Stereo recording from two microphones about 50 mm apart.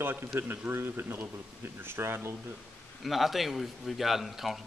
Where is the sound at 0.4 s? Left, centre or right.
Right.